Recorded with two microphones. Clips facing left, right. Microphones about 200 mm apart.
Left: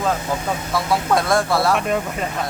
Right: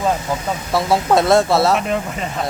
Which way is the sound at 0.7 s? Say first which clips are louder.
Right 4 dB; 25° right (ahead or behind).